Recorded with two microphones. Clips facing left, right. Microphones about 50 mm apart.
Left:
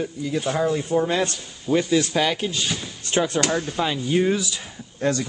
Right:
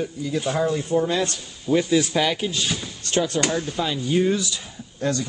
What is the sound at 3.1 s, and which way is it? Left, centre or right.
Speech, left.